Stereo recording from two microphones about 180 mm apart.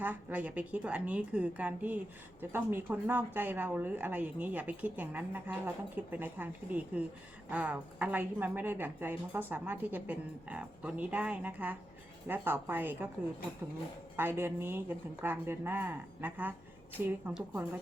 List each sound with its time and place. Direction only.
0.0 s speech: 10° right (ahead or behind)
14.2 s speech: 10° right (ahead or behind)